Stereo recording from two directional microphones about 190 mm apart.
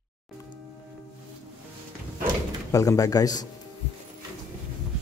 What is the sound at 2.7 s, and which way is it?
Speech, 15° left (ahead or behind).